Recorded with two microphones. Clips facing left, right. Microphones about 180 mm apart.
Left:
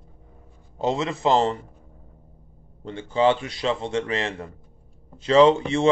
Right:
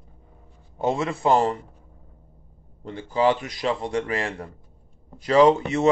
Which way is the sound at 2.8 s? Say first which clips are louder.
Left 1 dB; 25° left (ahead or behind).